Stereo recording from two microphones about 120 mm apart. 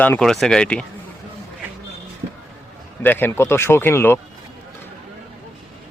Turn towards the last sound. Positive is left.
turn(degrees=20)  # may be behind; listen again after turning